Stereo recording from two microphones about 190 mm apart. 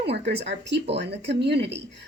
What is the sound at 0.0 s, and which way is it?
Speech, 60° right (ahead or behind).